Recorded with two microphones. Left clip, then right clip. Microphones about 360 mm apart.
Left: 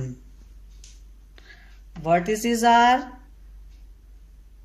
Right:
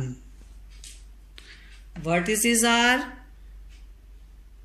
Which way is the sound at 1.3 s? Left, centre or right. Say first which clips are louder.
Right 2 dB; left.